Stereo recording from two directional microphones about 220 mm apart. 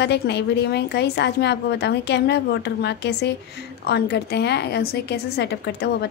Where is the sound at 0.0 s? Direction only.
50° left (ahead or behind).